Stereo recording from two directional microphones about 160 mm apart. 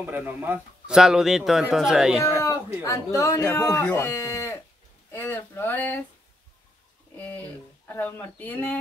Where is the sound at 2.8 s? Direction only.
20° left (ahead or behind).